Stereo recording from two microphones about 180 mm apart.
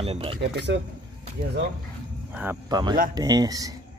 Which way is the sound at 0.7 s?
75° right (ahead or behind).